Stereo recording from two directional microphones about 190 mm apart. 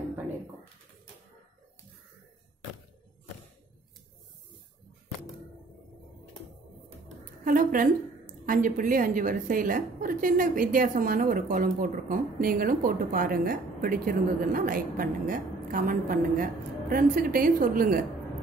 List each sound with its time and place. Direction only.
7.4 s a woman's voice: 45° right (ahead or behind)